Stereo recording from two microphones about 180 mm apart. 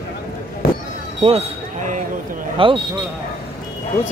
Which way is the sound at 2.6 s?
30° right (ahead or behind).